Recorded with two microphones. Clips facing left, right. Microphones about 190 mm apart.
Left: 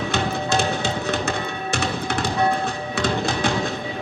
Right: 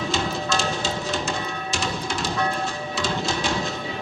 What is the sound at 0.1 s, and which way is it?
Music, 60° left (ahead or behind).